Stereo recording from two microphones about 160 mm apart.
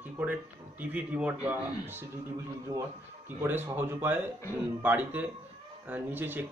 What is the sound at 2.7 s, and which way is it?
Speech, 25° right (ahead or behind).